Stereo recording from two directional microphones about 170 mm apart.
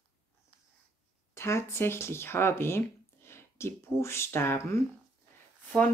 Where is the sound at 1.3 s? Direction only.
15° left (ahead or behind).